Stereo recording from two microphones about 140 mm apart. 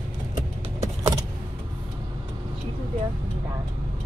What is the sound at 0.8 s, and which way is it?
Vehicle, 25° right (ahead or behind).